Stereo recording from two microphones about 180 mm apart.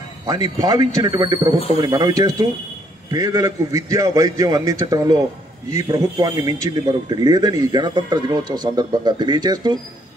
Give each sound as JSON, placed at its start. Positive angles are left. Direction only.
{"t": 0.3, "sound": "a man's voice", "side_deg": -20}